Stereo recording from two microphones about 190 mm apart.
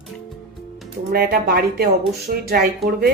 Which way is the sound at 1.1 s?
55° right (ahead or behind).